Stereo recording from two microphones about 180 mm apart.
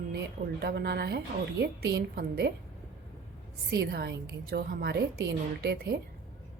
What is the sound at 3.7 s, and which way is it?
A woman's voice, 65° right (ahead or behind).